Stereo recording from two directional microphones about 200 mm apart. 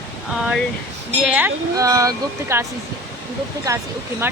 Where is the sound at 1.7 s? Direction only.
15° right (ahead or behind).